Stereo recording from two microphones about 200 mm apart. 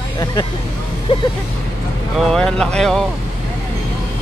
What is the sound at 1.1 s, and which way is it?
Speech, 30° left (ahead or behind).